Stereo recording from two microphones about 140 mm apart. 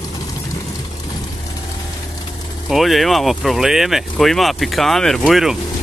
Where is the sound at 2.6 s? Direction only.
Centre (ahead or behind).